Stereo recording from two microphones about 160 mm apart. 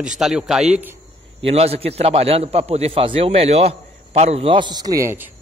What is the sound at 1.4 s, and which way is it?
A man's voice, 40° right (ahead or behind).